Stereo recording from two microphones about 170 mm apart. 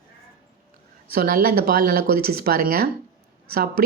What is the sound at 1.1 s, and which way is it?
A woman's voice, 60° right (ahead or behind).